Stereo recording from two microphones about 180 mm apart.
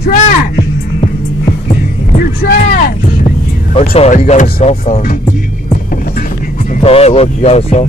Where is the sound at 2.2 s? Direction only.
55° left (ahead or behind).